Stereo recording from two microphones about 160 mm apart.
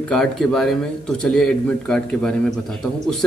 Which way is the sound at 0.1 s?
5° left (ahead or behind).